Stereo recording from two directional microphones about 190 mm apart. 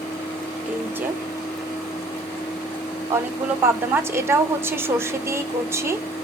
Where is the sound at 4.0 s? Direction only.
15° right (ahead or behind).